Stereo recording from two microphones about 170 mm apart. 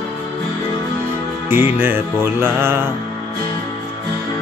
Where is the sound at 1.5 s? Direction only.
10° right (ahead or behind).